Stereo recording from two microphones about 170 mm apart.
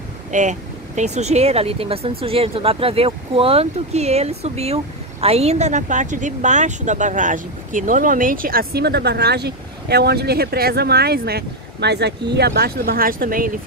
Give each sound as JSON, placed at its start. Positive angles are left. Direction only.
{"t": 0.3, "sound": "speech", "side_deg": -45}